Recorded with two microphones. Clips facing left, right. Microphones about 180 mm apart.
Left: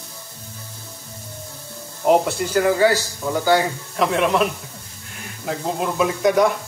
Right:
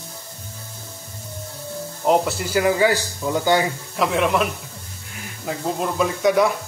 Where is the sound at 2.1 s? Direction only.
Centre (ahead or behind).